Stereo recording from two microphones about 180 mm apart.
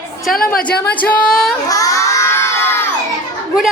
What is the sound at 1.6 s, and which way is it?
Crowd, 20° left (ahead or behind).